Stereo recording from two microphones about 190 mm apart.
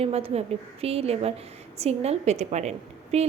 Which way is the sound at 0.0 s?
35° right (ahead or behind).